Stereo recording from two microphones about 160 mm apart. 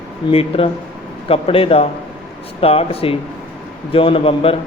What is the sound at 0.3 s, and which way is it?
Speech, 35° left (ahead or behind).